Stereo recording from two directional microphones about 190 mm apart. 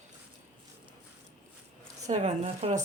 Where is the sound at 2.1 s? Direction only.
35° right (ahead or behind).